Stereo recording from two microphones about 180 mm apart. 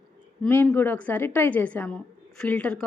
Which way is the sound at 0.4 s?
10° left (ahead or behind).